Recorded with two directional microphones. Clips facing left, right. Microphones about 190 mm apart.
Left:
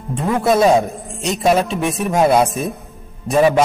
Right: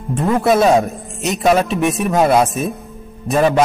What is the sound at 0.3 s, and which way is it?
A man's voice, centre (ahead or behind).